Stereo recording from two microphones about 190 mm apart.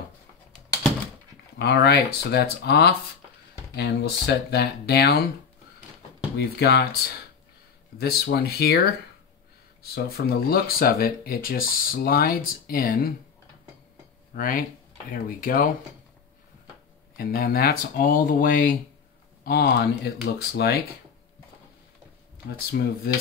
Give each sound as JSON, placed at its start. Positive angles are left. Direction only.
{"t": 1.6, "sound": "speech", "side_deg": 60}
{"t": 6.3, "sound": "speech", "side_deg": 60}
{"t": 9.9, "sound": "speech", "side_deg": 55}
{"t": 14.3, "sound": "speech", "side_deg": 50}
{"t": 17.2, "sound": "speech", "side_deg": 50}
{"t": 19.4, "sound": "speech", "side_deg": 55}
{"t": 22.7, "sound": "speech", "side_deg": 55}